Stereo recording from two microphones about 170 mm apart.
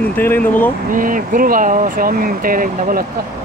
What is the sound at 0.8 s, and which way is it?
Speech, 55° right (ahead or behind).